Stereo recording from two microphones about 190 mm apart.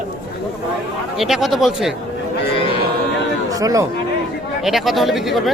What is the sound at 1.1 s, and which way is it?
Speech, centre (ahead or behind).